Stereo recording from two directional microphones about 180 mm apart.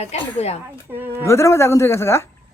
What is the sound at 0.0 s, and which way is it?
Speech, 35° left (ahead or behind).